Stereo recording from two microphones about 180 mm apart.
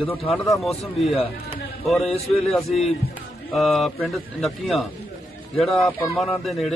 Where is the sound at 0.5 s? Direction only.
Centre (ahead or behind).